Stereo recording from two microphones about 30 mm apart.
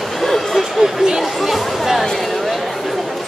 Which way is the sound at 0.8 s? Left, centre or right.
Right.